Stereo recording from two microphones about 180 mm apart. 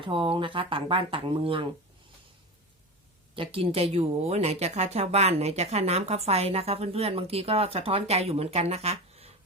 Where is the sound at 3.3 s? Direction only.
30° right (ahead or behind).